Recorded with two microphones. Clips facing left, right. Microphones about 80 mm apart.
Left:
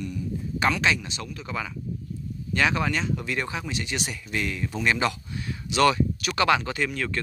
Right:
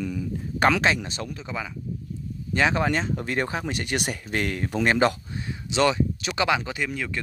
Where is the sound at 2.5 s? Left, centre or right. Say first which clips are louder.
Right 2 dB; right.